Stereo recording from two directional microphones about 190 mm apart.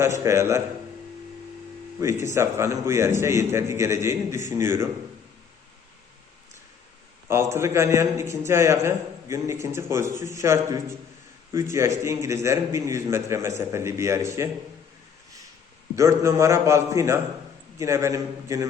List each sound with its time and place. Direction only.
0.0 s a man's voice: 15° right (ahead or behind)
2.2 s a man's voice: 15° right (ahead or behind)
7.5 s a man's voice: 15° right (ahead or behind)
16.0 s a man's voice: 15° right (ahead or behind)